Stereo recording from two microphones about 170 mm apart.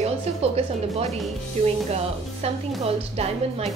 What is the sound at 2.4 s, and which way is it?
A woman's voice, 35° right (ahead or behind).